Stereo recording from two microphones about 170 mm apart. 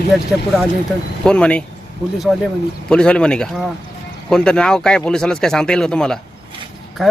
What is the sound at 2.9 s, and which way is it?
Speech, 5° left (ahead or behind).